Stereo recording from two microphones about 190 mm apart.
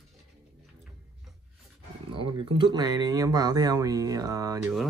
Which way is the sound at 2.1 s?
25° right (ahead or behind).